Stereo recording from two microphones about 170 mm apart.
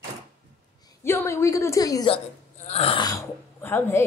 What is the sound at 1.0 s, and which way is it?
A woman's voice, 15° left (ahead or behind).